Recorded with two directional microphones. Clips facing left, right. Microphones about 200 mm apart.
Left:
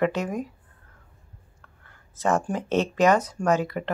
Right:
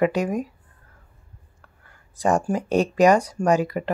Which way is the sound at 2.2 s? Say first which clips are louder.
Right 3 dB; 15° right (ahead or behind).